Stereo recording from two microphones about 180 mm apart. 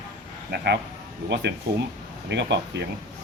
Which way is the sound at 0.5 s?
65° right (ahead or behind).